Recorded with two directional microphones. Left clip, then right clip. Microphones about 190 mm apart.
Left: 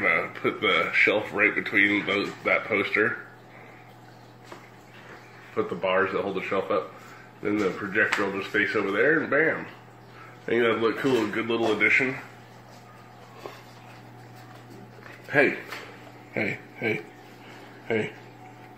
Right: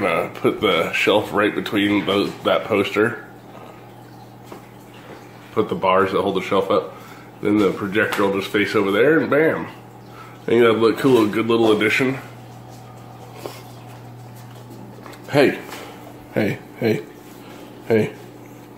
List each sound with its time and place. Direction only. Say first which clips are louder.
0.0 s speech: right 5 dB; 10° right (ahead or behind)
5.6 s speech: right 7 dB; 15° right (ahead or behind)
16.3 s speech: right 7 dB; 20° right (ahead or behind)